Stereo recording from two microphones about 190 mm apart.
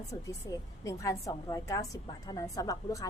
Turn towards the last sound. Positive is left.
turn(degrees=20)  # may be behind; listen again after turning